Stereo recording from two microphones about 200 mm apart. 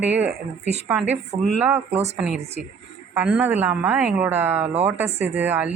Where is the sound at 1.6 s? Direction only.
10° right (ahead or behind).